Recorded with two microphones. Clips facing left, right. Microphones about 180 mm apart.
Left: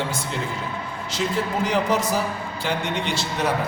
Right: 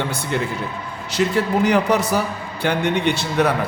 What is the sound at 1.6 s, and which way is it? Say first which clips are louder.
A man's voice: right 3 dB; 65° right (ahead or behind).